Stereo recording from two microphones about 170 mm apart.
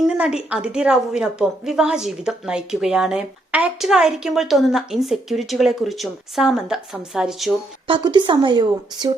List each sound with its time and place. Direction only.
0.1 s a woman's voice: 5° right (ahead or behind)
7.9 s a woman's voice: 30° right (ahead or behind)